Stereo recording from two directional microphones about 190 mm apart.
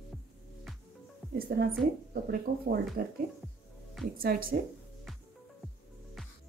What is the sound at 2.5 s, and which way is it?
Speech, 45° right (ahead or behind).